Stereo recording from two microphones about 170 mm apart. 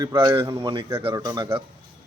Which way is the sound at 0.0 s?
20° right (ahead or behind).